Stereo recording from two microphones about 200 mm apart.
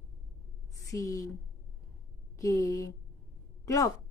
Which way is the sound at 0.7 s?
15° left (ahead or behind).